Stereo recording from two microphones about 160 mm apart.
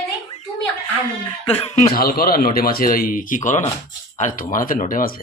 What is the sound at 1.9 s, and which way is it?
Speech, 70° left (ahead or behind).